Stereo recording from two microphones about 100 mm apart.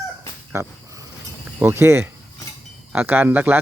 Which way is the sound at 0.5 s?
30° right (ahead or behind).